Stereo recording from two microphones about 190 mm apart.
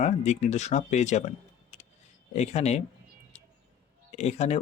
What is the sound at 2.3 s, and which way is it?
Speech, 35° left (ahead or behind).